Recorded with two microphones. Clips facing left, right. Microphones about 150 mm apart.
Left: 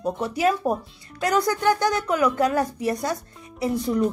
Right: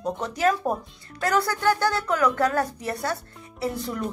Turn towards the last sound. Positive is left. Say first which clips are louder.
# left 5 dB
turn(degrees=15)  # may be behind; listen again after turning